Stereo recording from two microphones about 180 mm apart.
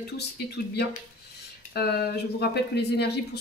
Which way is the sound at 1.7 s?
60° left (ahead or behind).